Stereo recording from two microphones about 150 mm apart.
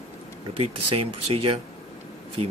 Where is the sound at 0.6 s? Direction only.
40° right (ahead or behind).